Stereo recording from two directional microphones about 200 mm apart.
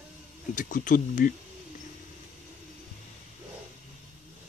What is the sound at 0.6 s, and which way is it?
Speech, 40° left (ahead or behind).